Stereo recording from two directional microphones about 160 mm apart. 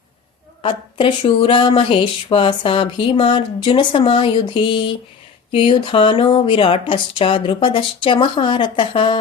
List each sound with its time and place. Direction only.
0.6 s speech: 35° left (ahead or behind)